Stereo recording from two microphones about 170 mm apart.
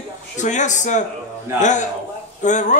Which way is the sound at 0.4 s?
45° left (ahead or behind).